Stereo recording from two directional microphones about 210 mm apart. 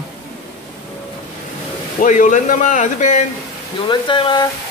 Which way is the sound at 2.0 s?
35° left (ahead or behind).